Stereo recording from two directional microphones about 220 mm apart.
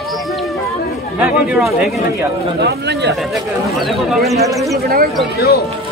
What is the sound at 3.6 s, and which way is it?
Speech, centre (ahead or behind).